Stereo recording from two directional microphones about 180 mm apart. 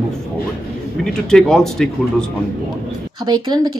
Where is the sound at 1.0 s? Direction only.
5° left (ahead or behind).